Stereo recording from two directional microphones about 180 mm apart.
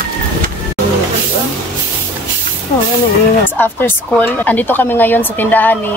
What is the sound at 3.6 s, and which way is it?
Speech, 10° left (ahead or behind).